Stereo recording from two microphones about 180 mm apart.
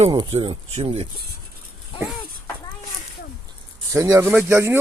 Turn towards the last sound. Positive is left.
turn(degrees=-15)  # may be behind; listen again after turning